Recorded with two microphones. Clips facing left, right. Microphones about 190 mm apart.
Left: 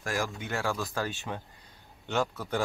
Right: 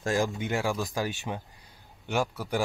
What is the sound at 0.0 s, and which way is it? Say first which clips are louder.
Speech: right 5 dB; 25° right (ahead or behind).